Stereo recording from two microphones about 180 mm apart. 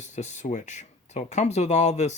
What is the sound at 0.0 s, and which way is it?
Speech, 40° left (ahead or behind).